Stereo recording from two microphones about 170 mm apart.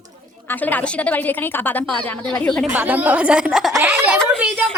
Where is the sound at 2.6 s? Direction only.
10° right (ahead or behind).